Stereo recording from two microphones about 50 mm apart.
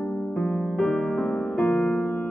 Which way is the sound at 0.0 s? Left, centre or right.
Left.